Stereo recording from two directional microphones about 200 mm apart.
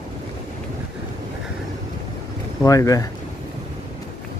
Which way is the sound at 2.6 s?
15° left (ahead or behind).